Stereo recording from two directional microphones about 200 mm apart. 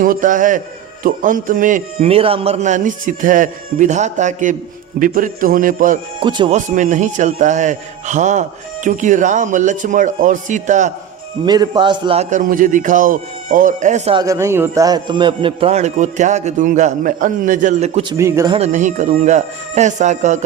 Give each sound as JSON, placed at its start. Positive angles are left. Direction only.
{"t": 0.0, "sound": "a man's voice", "side_deg": -40}
{"t": 6.1, "sound": "speech", "side_deg": -25}
{"t": 6.7, "sound": "a man's voice", "side_deg": -40}
{"t": 11.4, "sound": "a man's voice", "side_deg": -20}
{"t": 14.2, "sound": "a man's voice", "side_deg": -15}
{"t": 18.2, "sound": "speech", "side_deg": -15}
{"t": 18.5, "sound": "a man's voice", "side_deg": -35}